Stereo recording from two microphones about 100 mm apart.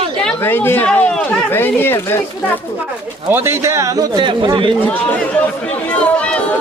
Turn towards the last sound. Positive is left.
turn(degrees=10)  # may be behind; listen again after turning